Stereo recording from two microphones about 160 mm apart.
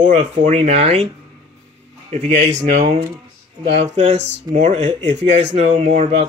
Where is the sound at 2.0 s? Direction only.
45° right (ahead or behind).